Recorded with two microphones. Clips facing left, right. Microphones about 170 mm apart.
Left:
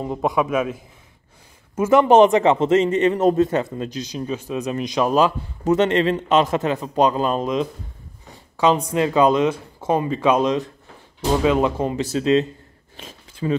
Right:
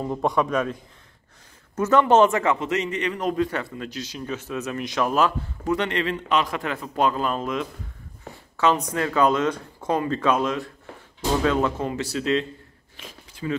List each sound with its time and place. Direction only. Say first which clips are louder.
0.0 s a man's voice: left 2 dB; 5° left (ahead or behind); by 3.4 s 35° left (ahead or behind)
3.4 s speech: left 7 dB; 20° left (ahead or behind)
8.7 s speech: left 5 dB; 25° left (ahead or behind)
12.9 s a sound: left 3 dB; 25° left (ahead or behind)